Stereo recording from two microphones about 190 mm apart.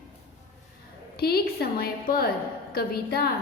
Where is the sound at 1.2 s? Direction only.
55° left (ahead or behind).